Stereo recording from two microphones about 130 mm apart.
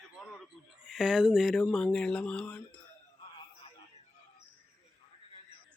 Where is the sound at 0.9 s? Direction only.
5° right (ahead or behind).